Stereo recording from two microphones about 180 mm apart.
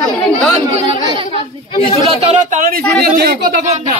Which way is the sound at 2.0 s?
45° right (ahead or behind).